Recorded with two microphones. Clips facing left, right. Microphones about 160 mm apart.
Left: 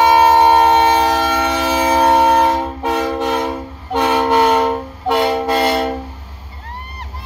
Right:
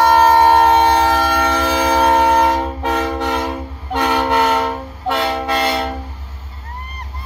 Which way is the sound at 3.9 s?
10° left (ahead or behind).